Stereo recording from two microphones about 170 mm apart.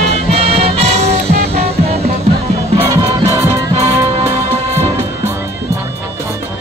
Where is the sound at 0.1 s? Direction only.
40° right (ahead or behind).